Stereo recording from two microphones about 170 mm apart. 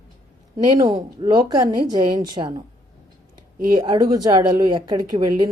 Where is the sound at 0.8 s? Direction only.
25° right (ahead or behind).